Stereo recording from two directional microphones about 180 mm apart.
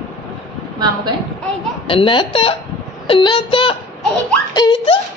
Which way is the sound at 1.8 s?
30° left (ahead or behind).